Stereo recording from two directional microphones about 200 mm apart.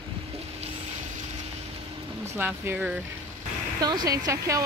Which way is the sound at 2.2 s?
10° right (ahead or behind).